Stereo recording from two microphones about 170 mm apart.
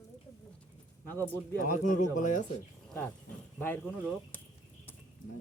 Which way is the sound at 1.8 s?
50° left (ahead or behind).